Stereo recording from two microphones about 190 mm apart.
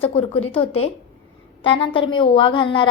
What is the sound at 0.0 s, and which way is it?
A woman's voice, 30° left (ahead or behind).